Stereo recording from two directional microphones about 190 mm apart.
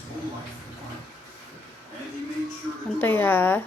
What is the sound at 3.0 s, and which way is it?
Speech, 10° left (ahead or behind).